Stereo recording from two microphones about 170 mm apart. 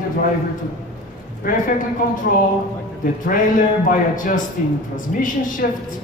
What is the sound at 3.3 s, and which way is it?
A man's voice, 50° left (ahead or behind).